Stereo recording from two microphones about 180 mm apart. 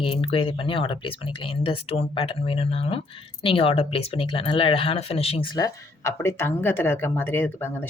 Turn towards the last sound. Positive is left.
turn(degrees=10)  # may be behind; listen again after turning